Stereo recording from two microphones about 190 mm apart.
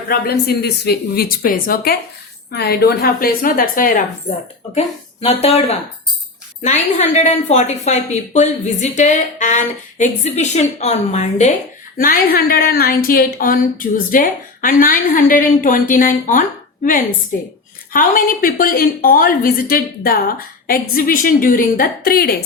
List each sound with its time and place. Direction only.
0.1 s a woman's voice: 55° left (ahead or behind)
5.2 s a woman's voice: 35° left (ahead or behind)
11.9 s a woman's voice: 50° left (ahead or behind)
17.9 s a woman's voice: 50° left (ahead or behind)